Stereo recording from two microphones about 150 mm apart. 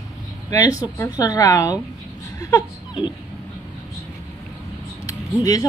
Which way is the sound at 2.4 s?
30° left (ahead or behind).